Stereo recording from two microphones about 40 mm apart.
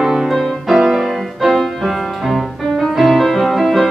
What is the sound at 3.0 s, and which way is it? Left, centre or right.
Music, centre.